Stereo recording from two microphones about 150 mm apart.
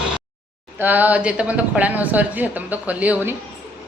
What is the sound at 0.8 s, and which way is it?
Speech, 10° right (ahead or behind).